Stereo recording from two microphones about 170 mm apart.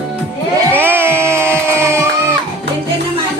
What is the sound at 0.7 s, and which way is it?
Music, 10° right (ahead or behind).